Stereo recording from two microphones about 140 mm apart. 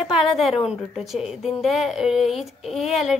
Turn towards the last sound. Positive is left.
turn(degrees=0)  # may be behind; listen again after turning